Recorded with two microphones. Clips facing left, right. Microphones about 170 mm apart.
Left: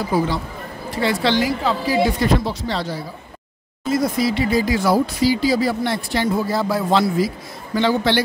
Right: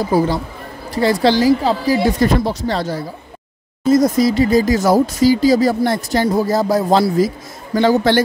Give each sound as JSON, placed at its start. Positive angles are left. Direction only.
{"t": 0.1, "sound": "a woman's voice", "side_deg": -35}